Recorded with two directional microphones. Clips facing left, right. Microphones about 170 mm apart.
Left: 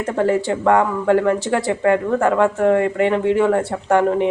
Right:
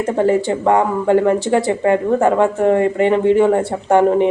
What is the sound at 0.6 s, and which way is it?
Speech, 20° right (ahead or behind).